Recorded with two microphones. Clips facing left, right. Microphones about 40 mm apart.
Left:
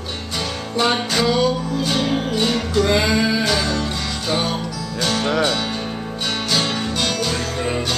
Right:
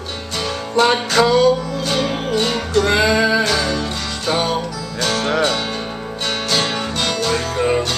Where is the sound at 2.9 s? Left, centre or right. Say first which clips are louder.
Right 4 dB; centre.